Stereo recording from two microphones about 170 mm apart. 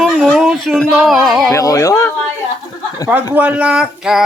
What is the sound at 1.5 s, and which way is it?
Speech, 20° left (ahead or behind).